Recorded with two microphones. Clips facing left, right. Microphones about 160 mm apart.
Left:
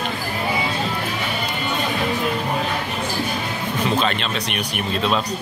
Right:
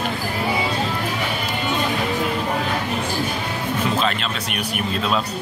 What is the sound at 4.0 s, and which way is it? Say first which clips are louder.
Speech: left 1 dB; 5° right (ahead or behind).